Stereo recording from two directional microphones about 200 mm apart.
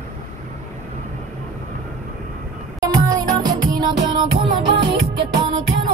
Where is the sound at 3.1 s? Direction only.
20° right (ahead or behind).